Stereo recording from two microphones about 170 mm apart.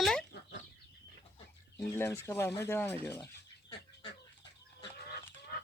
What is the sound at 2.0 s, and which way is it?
Speech, 15° left (ahead or behind).